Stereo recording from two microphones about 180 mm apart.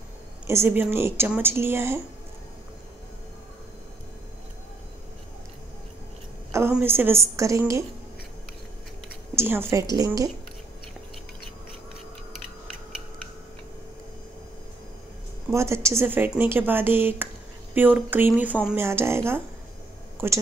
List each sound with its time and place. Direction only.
0.5 s a woman's voice: 15° right (ahead or behind)
6.7 s a woman's voice: 10° right (ahead or behind)
9.3 s a woman's voice: 15° right (ahead or behind)
15.5 s a woman's voice: 15° right (ahead or behind)